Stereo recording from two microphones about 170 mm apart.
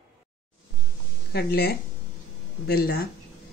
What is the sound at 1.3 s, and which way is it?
Speech, 70° left (ahead or behind).